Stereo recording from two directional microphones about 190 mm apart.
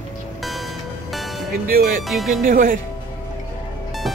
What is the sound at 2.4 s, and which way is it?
Speech, 45° right (ahead or behind).